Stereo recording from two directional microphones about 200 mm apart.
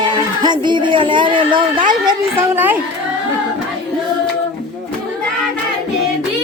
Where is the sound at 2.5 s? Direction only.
10° right (ahead or behind).